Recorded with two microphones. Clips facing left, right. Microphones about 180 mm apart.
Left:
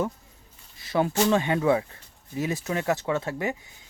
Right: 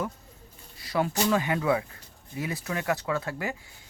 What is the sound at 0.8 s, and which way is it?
Speech, 25° left (ahead or behind).